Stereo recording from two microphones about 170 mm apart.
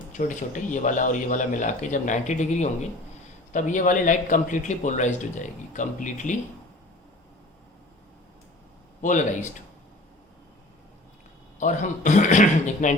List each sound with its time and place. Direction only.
0.1 s speech: 45° left (ahead or behind)
9.0 s speech: 50° left (ahead or behind)
11.6 s speech: 45° left (ahead or behind)